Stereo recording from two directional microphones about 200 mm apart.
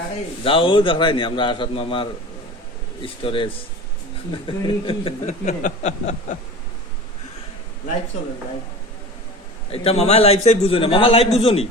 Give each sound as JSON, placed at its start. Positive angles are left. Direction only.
{"t": 0.4, "sound": "a man's voice", "side_deg": 25}
{"t": 9.7, "sound": "a man's voice", "side_deg": 30}